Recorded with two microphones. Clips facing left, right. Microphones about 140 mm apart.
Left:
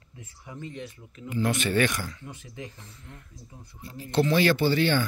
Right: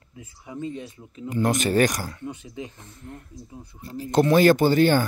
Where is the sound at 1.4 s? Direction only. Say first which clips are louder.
Right 4 dB; 40° right (ahead or behind).